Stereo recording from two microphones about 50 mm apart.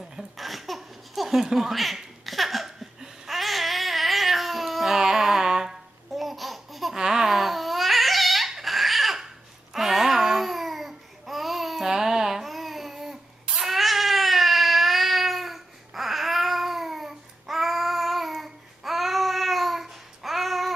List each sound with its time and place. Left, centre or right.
0.1 s baby laughter: centre
7.0 s babbling: centre